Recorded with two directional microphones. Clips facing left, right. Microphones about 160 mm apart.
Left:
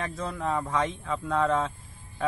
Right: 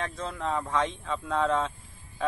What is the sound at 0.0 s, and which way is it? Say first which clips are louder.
Speech: left 1 dB; centre (ahead or behind).